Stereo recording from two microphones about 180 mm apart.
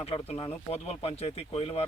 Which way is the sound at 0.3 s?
35° left (ahead or behind).